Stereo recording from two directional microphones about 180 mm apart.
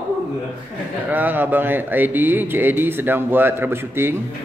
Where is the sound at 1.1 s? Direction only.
10° right (ahead or behind).